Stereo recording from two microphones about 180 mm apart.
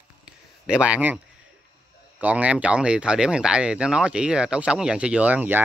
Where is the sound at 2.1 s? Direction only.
10° right (ahead or behind).